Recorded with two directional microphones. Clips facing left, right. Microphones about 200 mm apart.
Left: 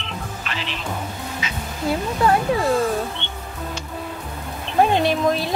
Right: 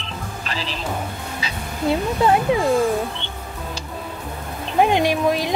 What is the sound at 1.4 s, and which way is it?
Speech, 25° right (ahead or behind).